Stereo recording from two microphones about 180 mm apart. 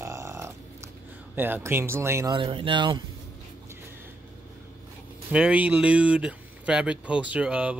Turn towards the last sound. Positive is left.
turn(degrees=-5)  # may be behind; listen again after turning